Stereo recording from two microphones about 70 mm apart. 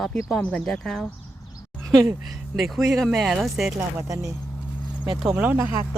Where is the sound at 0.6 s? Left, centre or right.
Centre.